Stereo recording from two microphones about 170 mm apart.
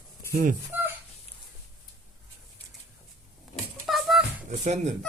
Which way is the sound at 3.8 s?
Centre (ahead or behind).